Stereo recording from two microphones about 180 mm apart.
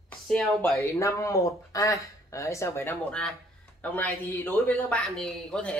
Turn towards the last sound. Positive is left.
turn(degrees=5)  # may be behind; listen again after turning